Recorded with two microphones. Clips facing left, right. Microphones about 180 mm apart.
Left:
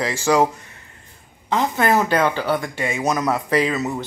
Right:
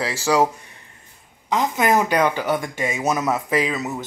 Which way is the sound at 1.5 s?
5° right (ahead or behind).